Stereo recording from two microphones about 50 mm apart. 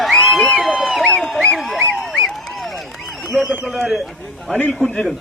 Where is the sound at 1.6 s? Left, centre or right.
Centre.